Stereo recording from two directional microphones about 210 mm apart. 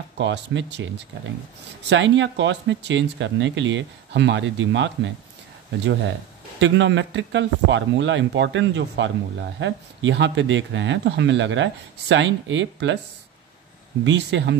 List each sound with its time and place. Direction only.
0.2 s speech: 55° right (ahead or behind)
1.9 s speech: 60° right (ahead or behind)
6.6 s speech: 60° right (ahead or behind)
14.0 s speech: 60° right (ahead or behind)